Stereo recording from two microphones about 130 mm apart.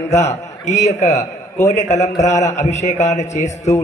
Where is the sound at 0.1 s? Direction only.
60° left (ahead or behind).